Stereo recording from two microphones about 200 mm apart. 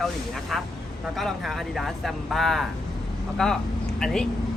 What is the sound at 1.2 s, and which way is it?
Speech, centre (ahead or behind).